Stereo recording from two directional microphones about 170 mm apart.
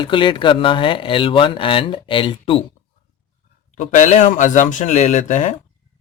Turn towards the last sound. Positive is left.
turn(degrees=45)  # may be behind; listen again after turning